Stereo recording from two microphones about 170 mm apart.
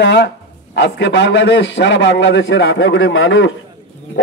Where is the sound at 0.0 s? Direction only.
90° left.